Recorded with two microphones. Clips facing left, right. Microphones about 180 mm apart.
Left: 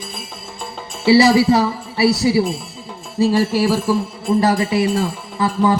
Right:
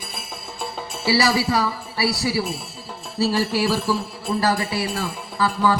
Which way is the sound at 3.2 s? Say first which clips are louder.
Left 5 dB; 15° left (ahead or behind).